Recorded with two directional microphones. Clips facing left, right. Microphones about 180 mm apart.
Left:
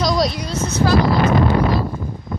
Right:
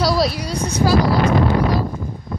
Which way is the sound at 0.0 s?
5° right (ahead or behind).